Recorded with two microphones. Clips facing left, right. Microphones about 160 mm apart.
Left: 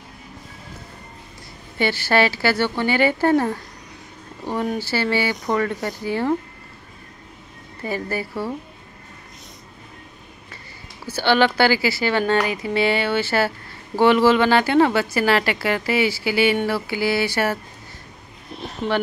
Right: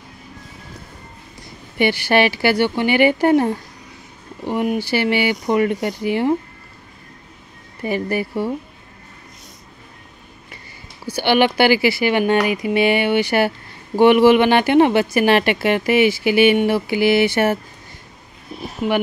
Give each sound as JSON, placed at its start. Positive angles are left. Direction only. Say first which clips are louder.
{"t": 1.8, "sound": "speech", "louder": "right 3 dB", "side_deg": -15}
{"t": 7.8, "sound": "a woman's voice", "louder": "right 5 dB", "side_deg": -20}
{"t": 11.1, "sound": "a woman's voice", "louder": "right 2 dB", "side_deg": -15}
{"t": 18.5, "sound": "a sound", "louder": "right 3 dB", "side_deg": -5}